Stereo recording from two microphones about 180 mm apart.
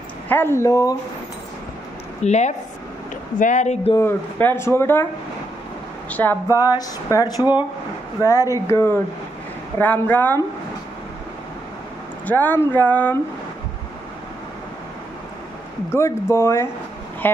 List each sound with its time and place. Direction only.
0.3 s speech: 15° left (ahead or behind)
2.2 s speech: 40° left (ahead or behind)
3.9 s speech: 10° left (ahead or behind)
6.0 s speech: 10° left (ahead or behind)
12.3 s speech: 10° left (ahead or behind)
15.9 s speech: 15° left (ahead or behind)